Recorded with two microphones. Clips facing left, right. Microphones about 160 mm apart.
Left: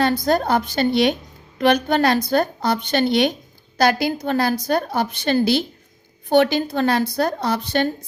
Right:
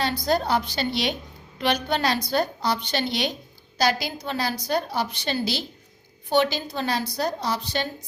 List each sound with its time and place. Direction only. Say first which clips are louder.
0.0 s a woman's voice: left 5 dB; 50° left (ahead or behind)